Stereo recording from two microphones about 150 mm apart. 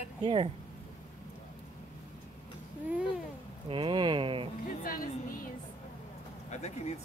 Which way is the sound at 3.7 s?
35° right (ahead or behind).